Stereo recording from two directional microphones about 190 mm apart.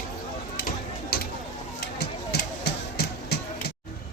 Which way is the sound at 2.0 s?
60° left (ahead or behind).